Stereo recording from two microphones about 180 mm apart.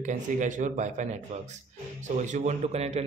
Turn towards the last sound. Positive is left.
turn(degrees=-35)  # may be behind; listen again after turning